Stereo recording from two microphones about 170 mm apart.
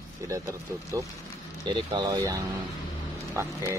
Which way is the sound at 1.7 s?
25° right (ahead or behind).